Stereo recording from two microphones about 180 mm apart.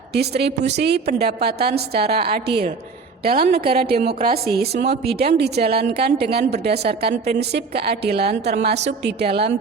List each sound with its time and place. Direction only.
0.1 s a woman's voice: 65° right (ahead or behind)